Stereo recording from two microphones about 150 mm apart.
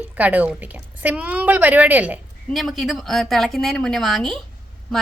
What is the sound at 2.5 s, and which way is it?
A woman's voice, centre (ahead or behind).